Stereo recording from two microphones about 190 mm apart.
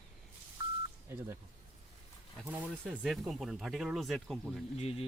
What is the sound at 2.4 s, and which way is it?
Speech, 5° right (ahead or behind).